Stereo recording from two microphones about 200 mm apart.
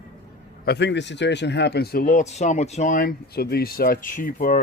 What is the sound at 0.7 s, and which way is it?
Speech, 60° left (ahead or behind).